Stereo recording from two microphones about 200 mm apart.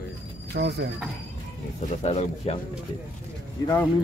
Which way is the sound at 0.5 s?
55° right (ahead or behind).